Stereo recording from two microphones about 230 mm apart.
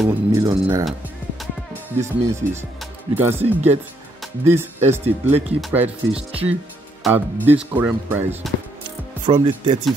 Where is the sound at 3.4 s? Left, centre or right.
Right.